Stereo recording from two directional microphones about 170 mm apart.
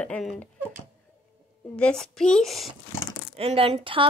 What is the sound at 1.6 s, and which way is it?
Speech, 5° left (ahead or behind).